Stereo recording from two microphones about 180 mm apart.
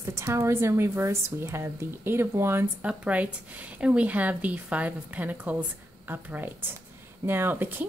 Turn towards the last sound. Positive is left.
turn(degrees=-10)  # may be behind; listen again after turning